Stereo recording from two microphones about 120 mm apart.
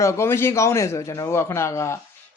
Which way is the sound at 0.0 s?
25° left (ahead or behind).